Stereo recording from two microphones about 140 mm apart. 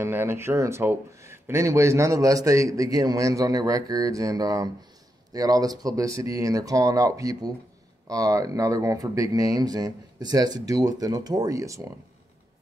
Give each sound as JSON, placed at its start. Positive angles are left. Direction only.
{"t": 0.0, "sound": "a man's voice", "side_deg": -15}